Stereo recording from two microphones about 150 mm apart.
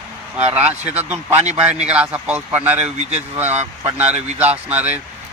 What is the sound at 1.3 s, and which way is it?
Speech, 45° right (ahead or behind).